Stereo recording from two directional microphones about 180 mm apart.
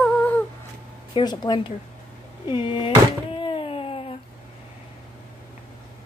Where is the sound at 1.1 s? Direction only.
25° left (ahead or behind).